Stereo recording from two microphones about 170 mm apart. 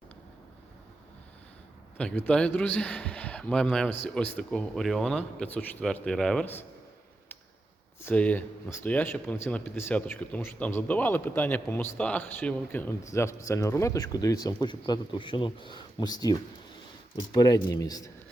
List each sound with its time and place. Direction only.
2.0 s speech: 5° left (ahead or behind)
8.0 s speech: 10° left (ahead or behind)